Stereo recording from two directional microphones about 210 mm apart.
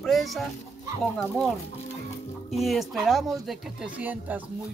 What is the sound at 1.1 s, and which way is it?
Speech, 5° left (ahead or behind).